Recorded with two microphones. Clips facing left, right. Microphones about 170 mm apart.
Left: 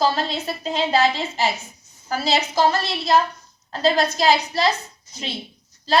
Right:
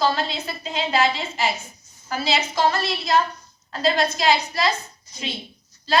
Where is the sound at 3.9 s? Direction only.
35° left (ahead or behind).